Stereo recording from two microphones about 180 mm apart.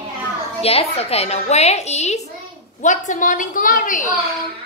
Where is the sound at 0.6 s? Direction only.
35° left (ahead or behind).